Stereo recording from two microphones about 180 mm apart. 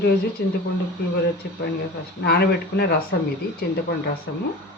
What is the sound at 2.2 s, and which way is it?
Speech, 60° left (ahead or behind).